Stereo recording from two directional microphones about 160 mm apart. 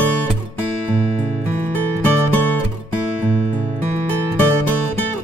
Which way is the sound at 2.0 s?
10° left (ahead or behind).